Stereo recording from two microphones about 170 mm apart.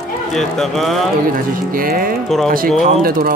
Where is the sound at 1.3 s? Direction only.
55° right (ahead or behind).